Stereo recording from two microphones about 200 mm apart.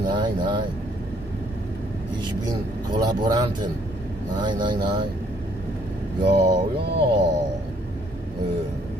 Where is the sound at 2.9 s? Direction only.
20° right (ahead or behind).